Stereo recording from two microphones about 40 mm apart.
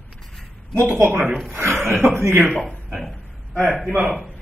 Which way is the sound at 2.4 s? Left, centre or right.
Left.